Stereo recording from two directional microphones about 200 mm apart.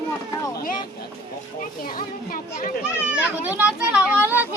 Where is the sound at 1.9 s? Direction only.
45° left (ahead or behind).